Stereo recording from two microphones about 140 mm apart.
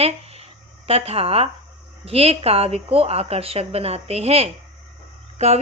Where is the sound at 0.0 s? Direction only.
45° right (ahead or behind).